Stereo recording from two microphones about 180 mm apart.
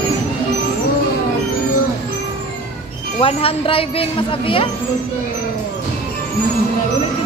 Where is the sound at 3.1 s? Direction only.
30° left (ahead or behind).